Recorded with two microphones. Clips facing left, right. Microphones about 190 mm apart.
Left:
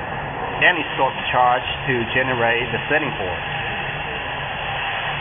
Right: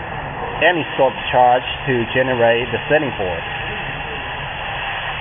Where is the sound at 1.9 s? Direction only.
Centre (ahead or behind).